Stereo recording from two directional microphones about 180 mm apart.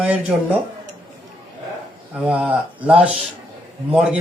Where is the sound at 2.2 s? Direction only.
5° right (ahead or behind).